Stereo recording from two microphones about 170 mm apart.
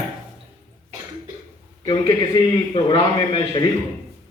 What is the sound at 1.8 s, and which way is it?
A man's voice, 25° left (ahead or behind).